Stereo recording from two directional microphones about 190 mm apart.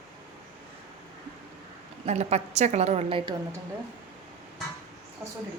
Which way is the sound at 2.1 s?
35° right (ahead or behind).